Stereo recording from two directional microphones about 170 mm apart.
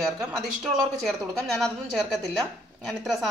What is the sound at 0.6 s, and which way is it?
A woman's voice, centre (ahead or behind).